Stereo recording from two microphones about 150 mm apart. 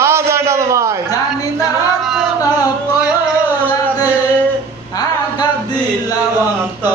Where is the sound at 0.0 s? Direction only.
15° right (ahead or behind).